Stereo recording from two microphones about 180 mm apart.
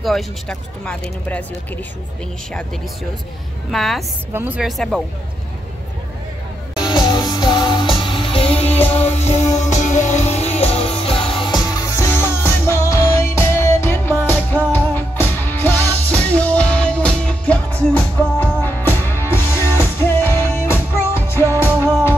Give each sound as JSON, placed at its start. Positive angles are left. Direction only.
{"t": 0.0, "sound": "speech", "side_deg": 5}
{"t": 3.7, "sound": "speech", "side_deg": 0}
{"t": 4.3, "sound": "speech", "side_deg": -10}
{"t": 6.8, "sound": "music", "side_deg": 25}